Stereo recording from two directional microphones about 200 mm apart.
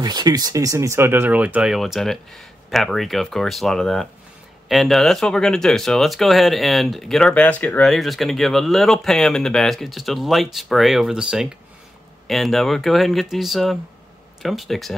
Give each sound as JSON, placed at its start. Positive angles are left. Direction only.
{"t": 0.0, "sound": "speech", "side_deg": -20}